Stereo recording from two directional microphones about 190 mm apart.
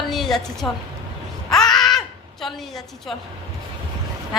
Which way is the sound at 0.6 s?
20° left (ahead or behind).